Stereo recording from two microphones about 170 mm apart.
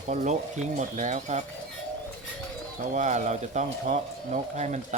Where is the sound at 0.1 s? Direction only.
45° right (ahead or behind).